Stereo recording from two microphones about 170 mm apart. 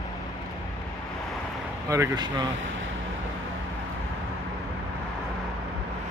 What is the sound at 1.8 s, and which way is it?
Speech, 20° right (ahead or behind).